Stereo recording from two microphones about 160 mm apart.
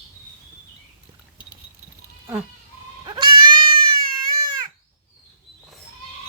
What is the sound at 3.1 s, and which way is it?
Goat, 30° right (ahead or behind).